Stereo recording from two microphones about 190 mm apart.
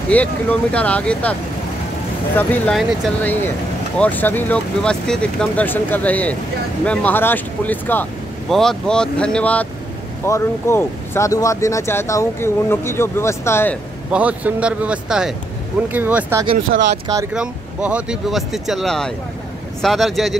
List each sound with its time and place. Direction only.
0.1 s speech: 10° left (ahead or behind)
2.3 s speech: 10° left (ahead or behind)
14.1 s speech: 5° right (ahead or behind)
16.7 s speech: 45° right (ahead or behind)
17.3 s speech: 5° right (ahead or behind)